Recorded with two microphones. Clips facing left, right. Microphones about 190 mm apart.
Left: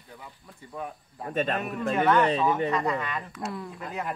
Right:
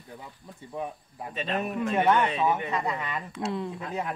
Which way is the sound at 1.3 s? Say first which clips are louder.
Left 5 dB; 50° left (ahead or behind).